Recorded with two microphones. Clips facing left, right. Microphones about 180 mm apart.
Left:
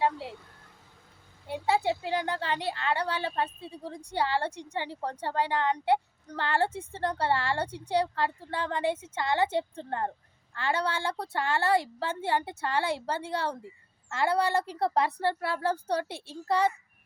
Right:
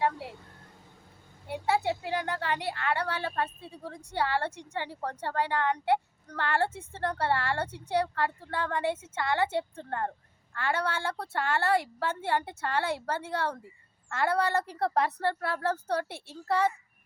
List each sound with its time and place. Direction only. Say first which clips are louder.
1.6 s a woman's voice: left 1 dB; 20° left (ahead or behind)